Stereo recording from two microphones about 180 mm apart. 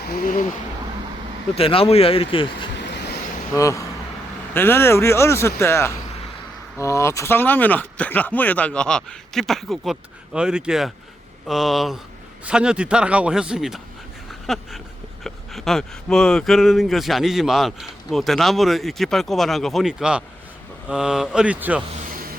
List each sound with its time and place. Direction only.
0.1 s speech: 50° left (ahead or behind)
1.5 s speech: 30° left (ahead or behind)
3.5 s speech: 15° left (ahead or behind); by 21.8 s 10° right (ahead or behind)